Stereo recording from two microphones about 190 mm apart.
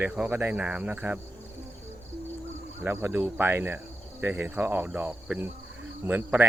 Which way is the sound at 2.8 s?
10° right (ahead or behind).